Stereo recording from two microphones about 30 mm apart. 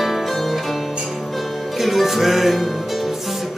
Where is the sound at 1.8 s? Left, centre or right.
Centre.